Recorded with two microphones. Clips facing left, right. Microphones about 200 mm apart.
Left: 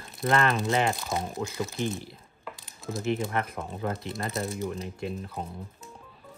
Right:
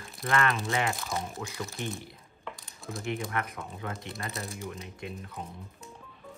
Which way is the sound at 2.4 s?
Centre (ahead or behind).